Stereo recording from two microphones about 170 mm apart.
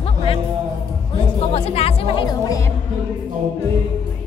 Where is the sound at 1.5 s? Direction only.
35° left (ahead or behind).